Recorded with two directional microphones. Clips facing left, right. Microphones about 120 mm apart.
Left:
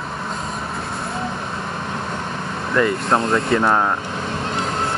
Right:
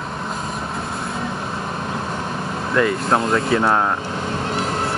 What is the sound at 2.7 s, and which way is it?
Speech, 5° right (ahead or behind).